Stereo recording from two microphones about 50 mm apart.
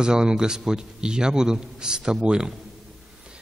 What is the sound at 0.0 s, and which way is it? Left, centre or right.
A man's voice, centre.